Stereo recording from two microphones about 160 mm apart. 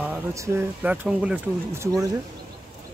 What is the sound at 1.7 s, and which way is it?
Speech, 15° right (ahead or behind).